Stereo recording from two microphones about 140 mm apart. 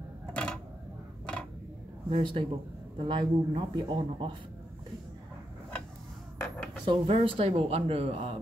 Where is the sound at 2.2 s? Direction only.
35° right (ahead or behind).